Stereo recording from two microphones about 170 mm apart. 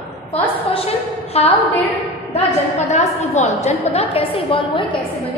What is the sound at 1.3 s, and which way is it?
Speech, 35° left (ahead or behind).